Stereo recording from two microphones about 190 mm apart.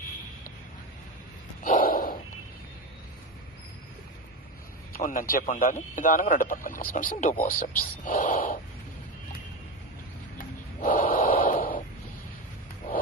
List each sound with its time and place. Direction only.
1.6 s a sound: 45° left (ahead or behind)
4.9 s speech: 45° left (ahead or behind)
10.8 s gasp: 45° left (ahead or behind)